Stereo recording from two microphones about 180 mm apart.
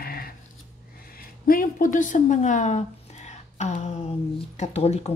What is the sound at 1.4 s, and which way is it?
A woman's voice, 50° left (ahead or behind).